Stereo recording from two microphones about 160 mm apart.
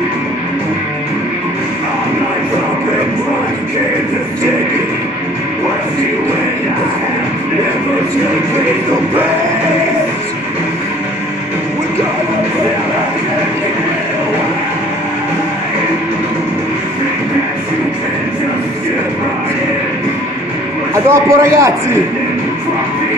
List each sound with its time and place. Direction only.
21.1 s a man's voice: 20° right (ahead or behind)